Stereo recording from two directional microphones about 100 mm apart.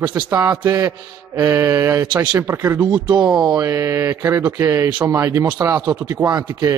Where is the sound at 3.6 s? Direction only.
35° right (ahead or behind).